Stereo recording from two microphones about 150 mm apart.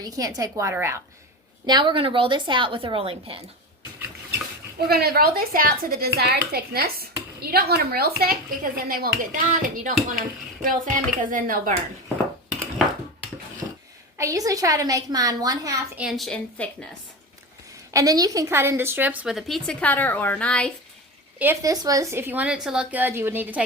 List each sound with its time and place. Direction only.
0.0 s a woman's voice: 25° right (ahead or behind)
1.6 s a woman's voice: 30° right (ahead or behind)
4.9 s a woman's voice: 90° right
6.1 s speech: 90° right; by 11.7 s 60° right (ahead or behind)
14.2 s a woman's voice: 20° right (ahead or behind)
16.0 s a woman's voice: centre (ahead or behind)
17.9 s a woman's voice: 25° right (ahead or behind); by 20.7 s 5° left (ahead or behind)
21.3 s a woman's voice: 15° right (ahead or behind)